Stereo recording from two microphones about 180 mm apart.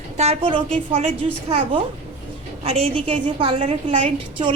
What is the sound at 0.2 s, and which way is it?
A woman's voice, 30° right (ahead or behind).